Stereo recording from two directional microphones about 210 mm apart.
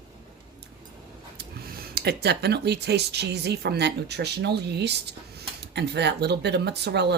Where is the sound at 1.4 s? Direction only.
50° right (ahead or behind).